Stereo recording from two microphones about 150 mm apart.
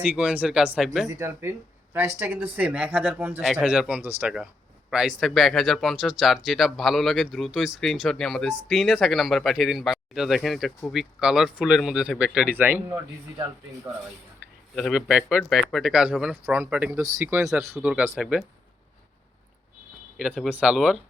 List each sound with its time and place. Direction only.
0.0 s speech: 10° right (ahead or behind)
3.4 s speech: centre (ahead or behind)
14.8 s speech: centre (ahead or behind); by 17.5 s 20° right (ahead or behind)
17.7 s speech: 5° right (ahead or behind)
20.1 s speech: 5° right (ahead or behind)